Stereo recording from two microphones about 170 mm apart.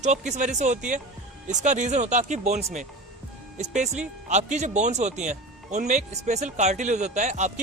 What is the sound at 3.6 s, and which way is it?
Speech, 45° right (ahead or behind).